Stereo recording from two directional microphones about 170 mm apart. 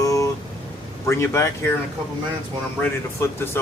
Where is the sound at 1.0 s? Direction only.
15° left (ahead or behind).